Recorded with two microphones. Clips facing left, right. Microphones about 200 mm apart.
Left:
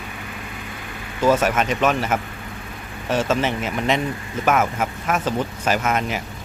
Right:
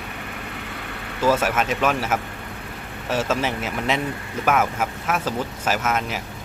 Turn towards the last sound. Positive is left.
turn(degrees=0)  # may be behind; listen again after turning